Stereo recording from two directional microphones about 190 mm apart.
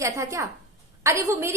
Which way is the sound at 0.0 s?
15° right (ahead or behind).